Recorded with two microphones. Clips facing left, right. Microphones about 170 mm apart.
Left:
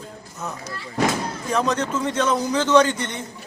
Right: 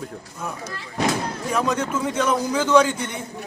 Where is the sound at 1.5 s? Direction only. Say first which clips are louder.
Left 1 dB; 10° right (ahead or behind).